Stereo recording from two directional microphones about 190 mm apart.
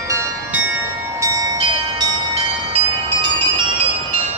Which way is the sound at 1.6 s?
30° right (ahead or behind).